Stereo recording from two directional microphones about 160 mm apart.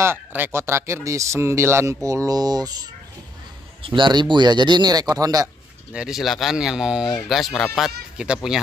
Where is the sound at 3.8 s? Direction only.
30° right (ahead or behind).